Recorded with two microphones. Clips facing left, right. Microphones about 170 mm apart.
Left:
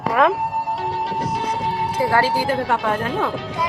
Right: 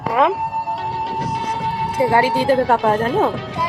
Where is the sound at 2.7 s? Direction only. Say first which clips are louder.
Right 5 dB; 35° right (ahead or behind).